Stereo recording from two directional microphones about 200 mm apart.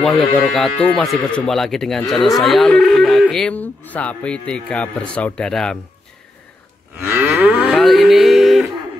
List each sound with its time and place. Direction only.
0.0 s speech: centre (ahead or behind)
7.0 s moo: 5° right (ahead or behind)